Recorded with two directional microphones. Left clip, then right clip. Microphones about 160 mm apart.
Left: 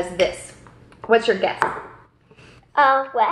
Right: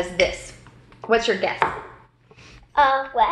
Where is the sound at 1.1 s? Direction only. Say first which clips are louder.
Left 3 dB; 20° right (ahead or behind).